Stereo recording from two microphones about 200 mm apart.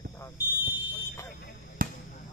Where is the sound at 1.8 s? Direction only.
45° right (ahead or behind).